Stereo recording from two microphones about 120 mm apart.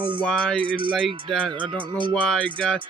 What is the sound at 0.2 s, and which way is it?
Music, 5° left (ahead or behind).